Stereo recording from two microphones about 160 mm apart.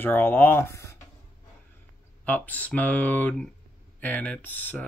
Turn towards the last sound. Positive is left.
turn(degrees=10)  # may be behind; listen again after turning